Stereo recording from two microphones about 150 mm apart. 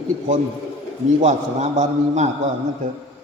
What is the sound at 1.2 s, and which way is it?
A man's voice, 50° right (ahead or behind).